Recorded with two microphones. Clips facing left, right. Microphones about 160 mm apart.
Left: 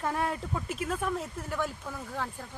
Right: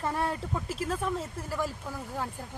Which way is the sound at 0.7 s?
30° right (ahead or behind).